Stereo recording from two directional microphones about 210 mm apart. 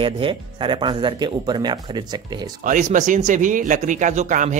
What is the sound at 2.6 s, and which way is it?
Speech, 40° right (ahead or behind).